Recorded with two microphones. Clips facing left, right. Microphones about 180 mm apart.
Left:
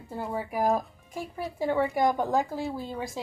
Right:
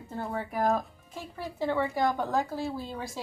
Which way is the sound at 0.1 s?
15° left (ahead or behind).